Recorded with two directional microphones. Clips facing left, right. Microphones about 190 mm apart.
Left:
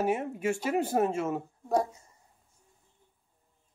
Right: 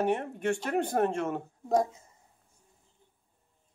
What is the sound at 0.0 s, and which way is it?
Speech, 5° left (ahead or behind).